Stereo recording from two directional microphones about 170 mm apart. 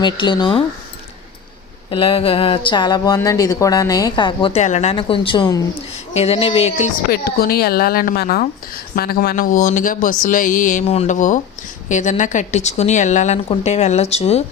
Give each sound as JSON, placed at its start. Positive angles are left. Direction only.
{"t": 0.0, "sound": "speech", "side_deg": 25}
{"t": 1.9, "sound": "speech", "side_deg": 30}
{"t": 4.6, "sound": "speech", "side_deg": 40}
{"t": 4.9, "sound": "speech", "side_deg": 30}
{"t": 6.1, "sound": "speech", "side_deg": 35}
{"t": 7.1, "sound": "speech", "side_deg": 65}